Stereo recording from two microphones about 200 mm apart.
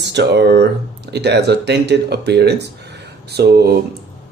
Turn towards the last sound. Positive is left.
turn(degrees=-55)  # may be behind; listen again after turning